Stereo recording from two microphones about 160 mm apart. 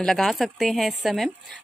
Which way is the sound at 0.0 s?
Centre (ahead or behind).